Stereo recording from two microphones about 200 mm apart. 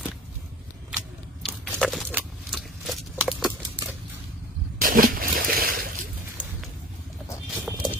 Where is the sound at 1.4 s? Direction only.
Centre (ahead or behind).